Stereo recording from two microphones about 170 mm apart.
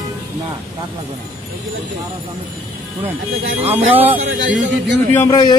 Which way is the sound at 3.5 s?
10° right (ahead or behind).